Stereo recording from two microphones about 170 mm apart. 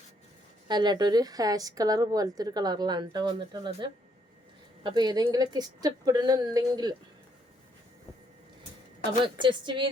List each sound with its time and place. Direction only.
0.7 s a woman's voice: 25° right (ahead or behind)
9.2 s a woman's voice: 30° right (ahead or behind)